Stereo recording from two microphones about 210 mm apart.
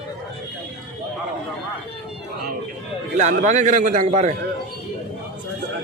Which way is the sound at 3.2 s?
35° right (ahead or behind).